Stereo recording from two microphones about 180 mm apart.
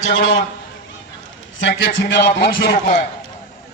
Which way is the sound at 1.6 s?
90° left.